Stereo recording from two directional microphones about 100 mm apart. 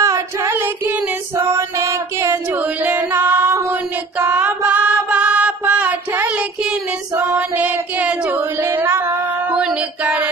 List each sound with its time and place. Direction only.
0.0 s singing: 30° right (ahead or behind)
1.4 s music: 25° right (ahead or behind)
4.2 s mantra: 20° right (ahead or behind)
7.2 s child singing: 15° right (ahead or behind)
9.6 s music: 10° right (ahead or behind)